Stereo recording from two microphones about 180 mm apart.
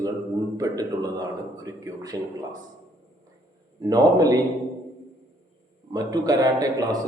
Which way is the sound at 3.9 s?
20° right (ahead or behind).